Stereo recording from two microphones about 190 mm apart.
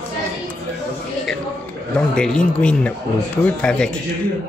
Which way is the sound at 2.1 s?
5° left (ahead or behind).